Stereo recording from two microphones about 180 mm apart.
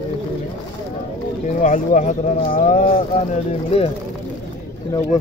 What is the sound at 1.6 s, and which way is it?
Speech, 45° left (ahead or behind).